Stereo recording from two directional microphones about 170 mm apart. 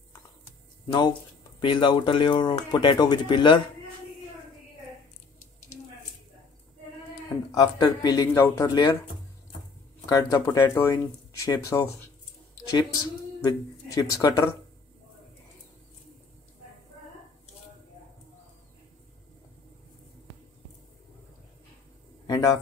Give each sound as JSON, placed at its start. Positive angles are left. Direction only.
{"t": 1.6, "sound": "speech", "side_deg": 30}
{"t": 7.5, "sound": "speech", "side_deg": 25}
{"t": 10.0, "sound": "speech", "side_deg": 20}
{"t": 22.2, "sound": "a sound", "side_deg": 20}